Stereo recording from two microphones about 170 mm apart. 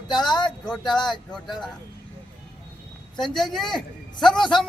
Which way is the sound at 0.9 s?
25° left (ahead or behind).